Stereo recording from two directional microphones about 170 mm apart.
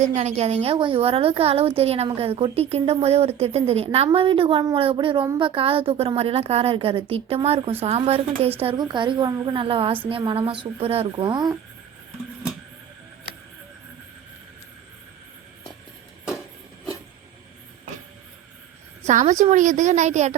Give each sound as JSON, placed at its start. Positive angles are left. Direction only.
{"t": 0.0, "sound": "a woman's voice", "side_deg": -40}
{"t": 19.0, "sound": "a woman's voice", "side_deg": -45}